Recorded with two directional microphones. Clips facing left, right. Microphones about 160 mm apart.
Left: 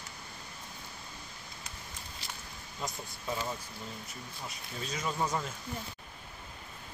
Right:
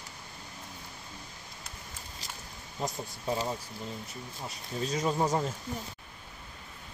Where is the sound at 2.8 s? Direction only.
35° right (ahead or behind).